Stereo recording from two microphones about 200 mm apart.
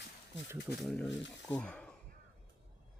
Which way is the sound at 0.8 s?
Centre (ahead or behind).